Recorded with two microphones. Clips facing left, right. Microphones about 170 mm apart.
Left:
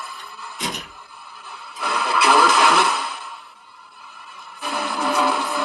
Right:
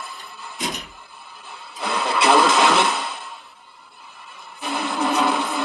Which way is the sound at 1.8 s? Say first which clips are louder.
Even; 25° right (ahead or behind).